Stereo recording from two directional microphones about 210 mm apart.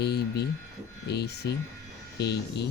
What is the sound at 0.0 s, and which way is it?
A man's voice, 50° left (ahead or behind).